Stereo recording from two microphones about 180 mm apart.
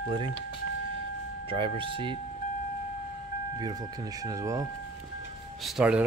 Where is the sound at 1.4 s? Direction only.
30° right (ahead or behind).